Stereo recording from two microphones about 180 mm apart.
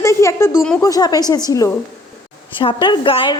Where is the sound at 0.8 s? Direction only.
20° left (ahead or behind).